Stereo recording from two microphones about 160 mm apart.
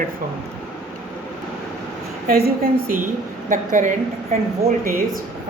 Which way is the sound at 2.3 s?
70° right (ahead or behind).